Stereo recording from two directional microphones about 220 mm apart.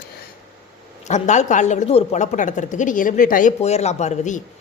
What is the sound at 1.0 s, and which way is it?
A woman's voice, 30° left (ahead or behind).